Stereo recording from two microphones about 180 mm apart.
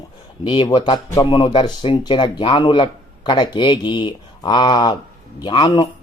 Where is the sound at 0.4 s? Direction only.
30° left (ahead or behind).